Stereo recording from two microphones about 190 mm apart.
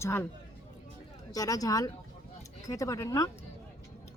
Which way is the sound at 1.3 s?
20° left (ahead or behind).